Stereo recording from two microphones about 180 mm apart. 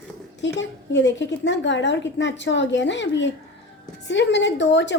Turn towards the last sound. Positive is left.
turn(degrees=80)